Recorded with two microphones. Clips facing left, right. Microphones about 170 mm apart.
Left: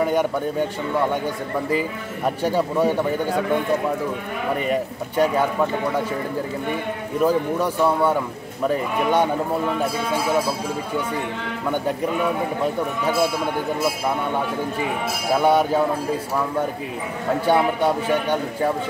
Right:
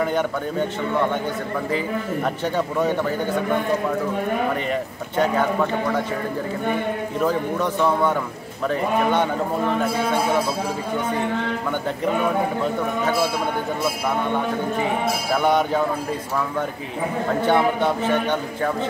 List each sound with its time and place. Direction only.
0.0 s a man's voice: 10° left (ahead or behind)
2.4 s a man's voice: 10° left (ahead or behind)
4.6 s a man's voice: 10° left (ahead or behind)
7.2 s a man's voice: 10° left (ahead or behind)
15.4 s a man's voice: 10° left (ahead or behind)
17.5 s a man's voice: 10° left (ahead or behind)